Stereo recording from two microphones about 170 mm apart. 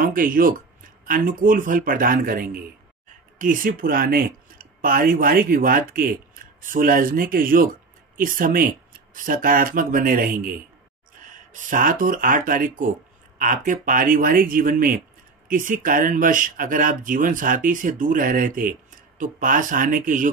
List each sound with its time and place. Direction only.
0.0 s speech: 55° right (ahead or behind)